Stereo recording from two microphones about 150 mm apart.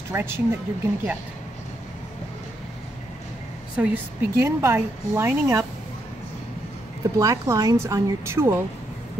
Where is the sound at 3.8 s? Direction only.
15° right (ahead or behind).